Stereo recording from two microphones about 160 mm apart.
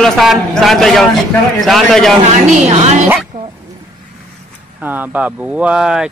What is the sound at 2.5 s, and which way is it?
Speech, 45° right (ahead or behind).